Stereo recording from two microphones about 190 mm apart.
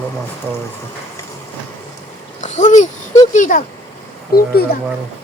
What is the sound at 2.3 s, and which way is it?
A child's voice, 40° left (ahead or behind).